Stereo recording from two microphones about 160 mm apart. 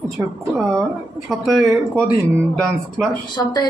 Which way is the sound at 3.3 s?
25° left (ahead or behind).